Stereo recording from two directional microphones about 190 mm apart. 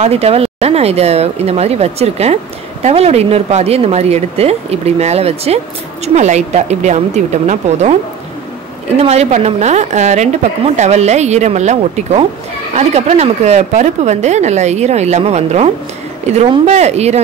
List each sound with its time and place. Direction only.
0.0 s speech: 35° right (ahead or behind)
9.0 s speech: 35° right (ahead or behind)